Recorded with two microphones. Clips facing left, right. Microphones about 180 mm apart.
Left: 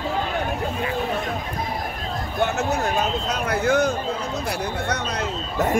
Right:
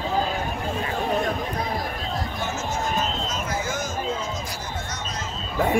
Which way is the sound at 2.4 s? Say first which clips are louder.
Left 6 dB; 65° left (ahead or behind).